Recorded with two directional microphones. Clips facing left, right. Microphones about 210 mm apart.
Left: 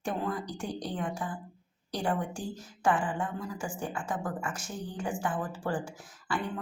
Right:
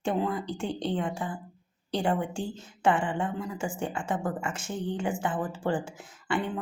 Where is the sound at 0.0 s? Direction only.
25° right (ahead or behind).